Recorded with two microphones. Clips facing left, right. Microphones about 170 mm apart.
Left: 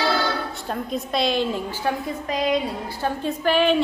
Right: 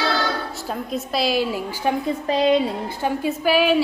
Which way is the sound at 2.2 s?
30° right (ahead or behind).